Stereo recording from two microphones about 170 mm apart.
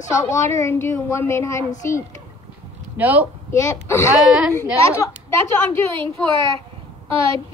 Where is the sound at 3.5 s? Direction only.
15° left (ahead or behind).